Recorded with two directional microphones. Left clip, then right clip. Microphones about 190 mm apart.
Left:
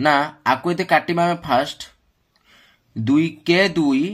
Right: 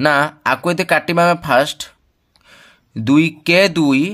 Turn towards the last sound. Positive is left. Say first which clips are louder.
# right 4 dB
turn(degrees=-45)  # may be behind; listen again after turning